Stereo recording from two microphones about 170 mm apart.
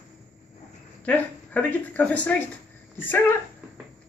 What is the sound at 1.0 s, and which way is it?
Speech, 10° left (ahead or behind).